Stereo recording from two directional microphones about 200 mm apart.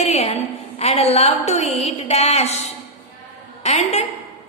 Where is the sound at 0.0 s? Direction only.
30° left (ahead or behind).